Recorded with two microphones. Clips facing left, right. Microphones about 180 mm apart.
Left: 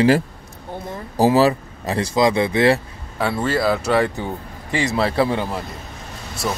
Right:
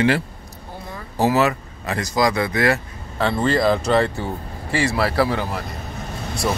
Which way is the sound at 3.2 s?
5° left (ahead or behind).